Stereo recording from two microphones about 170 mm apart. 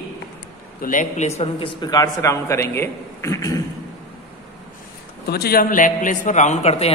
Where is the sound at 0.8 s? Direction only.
45° left (ahead or behind).